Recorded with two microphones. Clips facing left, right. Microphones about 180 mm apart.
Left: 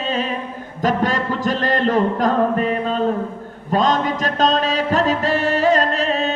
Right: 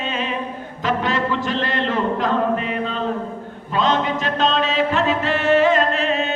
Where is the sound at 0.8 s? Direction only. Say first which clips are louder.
Left 2 dB; 45° left (ahead or behind).